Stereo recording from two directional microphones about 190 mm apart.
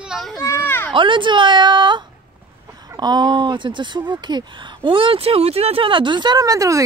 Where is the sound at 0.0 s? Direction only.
Centre (ahead or behind).